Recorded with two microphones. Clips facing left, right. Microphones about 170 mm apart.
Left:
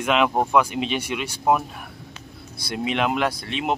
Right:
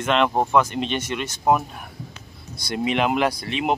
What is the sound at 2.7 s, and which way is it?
Speech, centre (ahead or behind).